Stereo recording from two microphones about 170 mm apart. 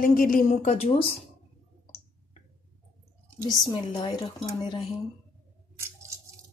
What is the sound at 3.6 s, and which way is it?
Speech, 25° left (ahead or behind).